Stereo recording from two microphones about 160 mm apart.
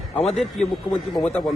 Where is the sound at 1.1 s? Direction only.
5° left (ahead or behind).